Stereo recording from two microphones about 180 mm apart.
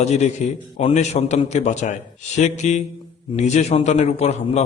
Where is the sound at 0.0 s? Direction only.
40° left (ahead or behind).